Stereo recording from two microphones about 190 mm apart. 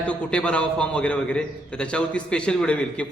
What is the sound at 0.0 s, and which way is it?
A man's voice, 5° left (ahead or behind).